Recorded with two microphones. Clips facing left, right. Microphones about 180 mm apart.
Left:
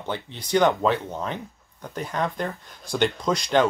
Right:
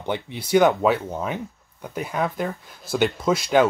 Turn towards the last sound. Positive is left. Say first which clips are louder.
# right 3 dB
turn(degrees=-5)  # may be behind; listen again after turning